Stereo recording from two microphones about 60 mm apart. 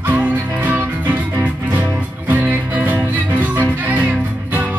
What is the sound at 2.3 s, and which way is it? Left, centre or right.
Music, right.